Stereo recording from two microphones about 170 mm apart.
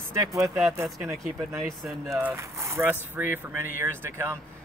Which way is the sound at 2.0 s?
15° right (ahead or behind).